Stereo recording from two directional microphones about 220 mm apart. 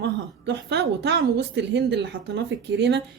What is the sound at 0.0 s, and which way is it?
A woman's voice, 50° right (ahead or behind).